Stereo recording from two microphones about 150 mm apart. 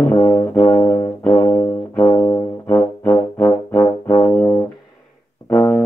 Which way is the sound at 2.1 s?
25° left (ahead or behind).